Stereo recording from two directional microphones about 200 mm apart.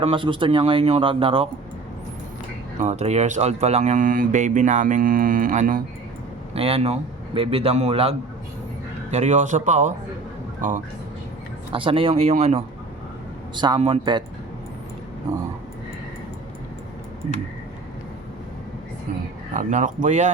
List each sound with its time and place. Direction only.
0.0 s a man's voice: 25° right (ahead or behind)
2.7 s speech: 35° right (ahead or behind)
6.5 s a man's voice: 30° right (ahead or behind)
11.7 s a man's voice: 25° right (ahead or behind)
15.3 s dog: 15° right (ahead or behind)
19.5 s speech: 40° right (ahead or behind)